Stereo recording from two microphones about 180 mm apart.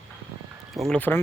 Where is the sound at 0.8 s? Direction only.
5° left (ahead or behind).